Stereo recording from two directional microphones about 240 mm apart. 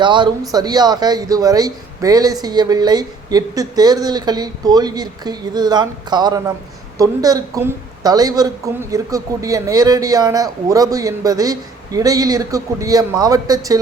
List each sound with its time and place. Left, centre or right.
0.0 s a woman's voice: centre